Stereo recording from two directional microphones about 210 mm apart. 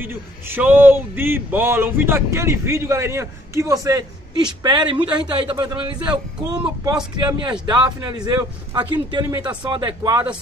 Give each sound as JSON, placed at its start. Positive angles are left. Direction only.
{"t": 0.0, "sound": "a man's voice", "side_deg": -10}